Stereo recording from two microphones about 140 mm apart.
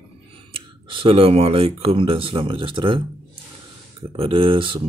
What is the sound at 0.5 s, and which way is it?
Speech, 40° right (ahead or behind).